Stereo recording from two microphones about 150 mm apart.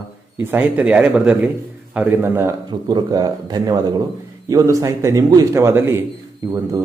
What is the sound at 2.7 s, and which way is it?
Speech, 30° right (ahead or behind).